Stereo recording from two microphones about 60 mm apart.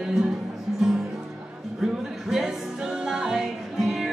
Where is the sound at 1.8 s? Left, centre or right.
Centre.